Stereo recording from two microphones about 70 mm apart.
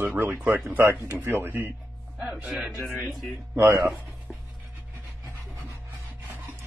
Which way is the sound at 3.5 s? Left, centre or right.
Right.